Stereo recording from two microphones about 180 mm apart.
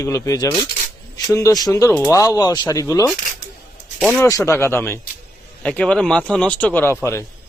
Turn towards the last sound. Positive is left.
turn(degrees=15)  # may be behind; listen again after turning